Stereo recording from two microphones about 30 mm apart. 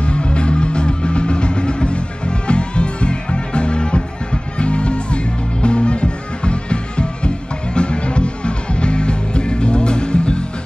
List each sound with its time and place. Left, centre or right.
0.0 s music: left